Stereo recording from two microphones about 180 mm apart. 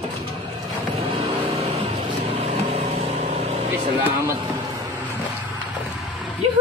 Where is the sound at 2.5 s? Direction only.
35° right (ahead or behind).